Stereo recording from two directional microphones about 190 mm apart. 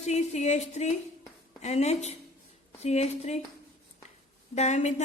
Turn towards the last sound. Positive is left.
turn(degrees=35)  # may be behind; listen again after turning